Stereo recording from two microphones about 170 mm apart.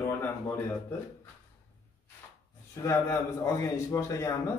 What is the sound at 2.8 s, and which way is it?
A man's voice, 20° left (ahead or behind).